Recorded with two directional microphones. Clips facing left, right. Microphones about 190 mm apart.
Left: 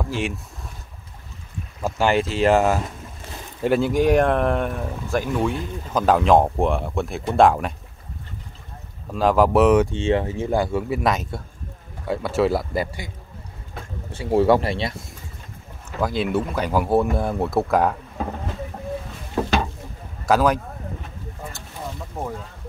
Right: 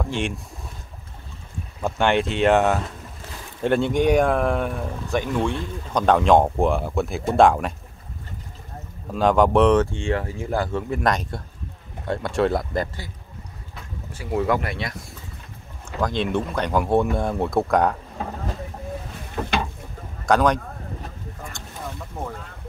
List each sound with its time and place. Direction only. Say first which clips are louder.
0.0 s speech: even; 5° left (ahead or behind)
1.8 s speech: even; centre (ahead or behind)
9.1 s speech: even; centre (ahead or behind)
14.1 s speech: left 6 dB; 30° left (ahead or behind)
16.0 s speech: left 1 dB; 5° left (ahead or behind)
20.2 s speech: even; 5° left (ahead or behind)